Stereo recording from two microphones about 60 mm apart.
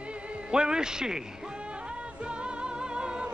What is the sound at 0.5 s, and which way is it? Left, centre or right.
Speech, centre.